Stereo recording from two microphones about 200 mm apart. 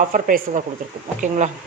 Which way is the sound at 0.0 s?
45° right (ahead or behind).